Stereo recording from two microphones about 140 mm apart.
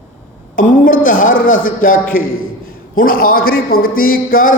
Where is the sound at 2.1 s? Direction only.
90° left.